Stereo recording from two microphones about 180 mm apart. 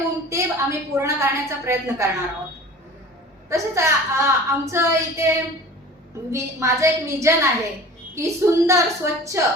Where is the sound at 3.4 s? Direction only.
15° right (ahead or behind).